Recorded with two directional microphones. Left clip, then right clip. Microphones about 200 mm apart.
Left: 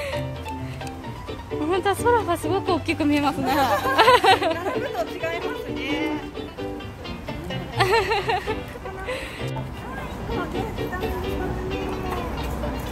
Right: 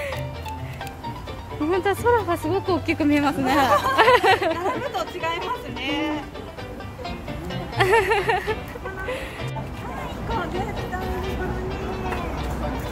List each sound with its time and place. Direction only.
1.7 s speech: centre (ahead or behind)
4.6 s speech: 45° right (ahead or behind)
7.7 s speech: 5° right (ahead or behind)